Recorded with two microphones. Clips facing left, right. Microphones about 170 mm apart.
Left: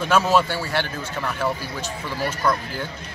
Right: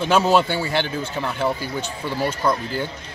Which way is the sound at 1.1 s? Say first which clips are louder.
Right 1 dB; 25° right (ahead or behind).